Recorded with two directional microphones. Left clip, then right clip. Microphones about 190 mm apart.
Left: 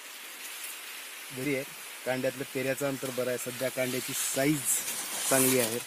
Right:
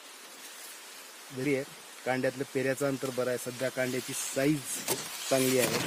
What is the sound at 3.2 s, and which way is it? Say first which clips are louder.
Speech: even; centre (ahead or behind).